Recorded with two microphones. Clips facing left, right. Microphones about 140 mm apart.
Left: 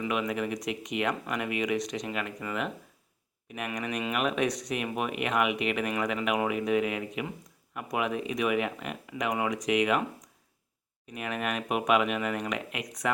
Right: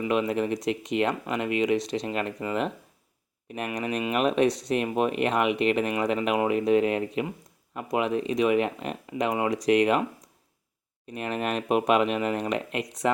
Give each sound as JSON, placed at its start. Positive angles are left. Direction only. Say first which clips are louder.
{"t": 0.1, "sound": "speech", "louder": "right 7 dB", "side_deg": -30}
{"t": 3.8, "sound": "speech", "louder": "right 4 dB", "side_deg": -30}
{"t": 11.1, "sound": "speech", "louder": "right 4 dB", "side_deg": -30}